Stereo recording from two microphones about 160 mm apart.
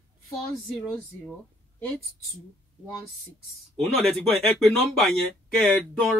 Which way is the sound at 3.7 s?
Centre (ahead or behind).